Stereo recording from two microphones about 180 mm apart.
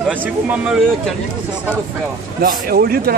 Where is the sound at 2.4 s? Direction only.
55° right (ahead or behind).